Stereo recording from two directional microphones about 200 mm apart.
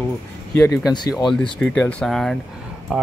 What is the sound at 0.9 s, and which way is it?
Speech, 20° left (ahead or behind).